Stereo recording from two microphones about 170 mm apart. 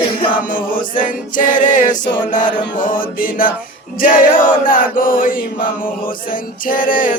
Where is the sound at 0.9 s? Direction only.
50° left (ahead or behind).